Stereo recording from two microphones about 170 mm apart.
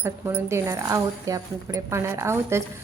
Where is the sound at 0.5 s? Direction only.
15° right (ahead or behind).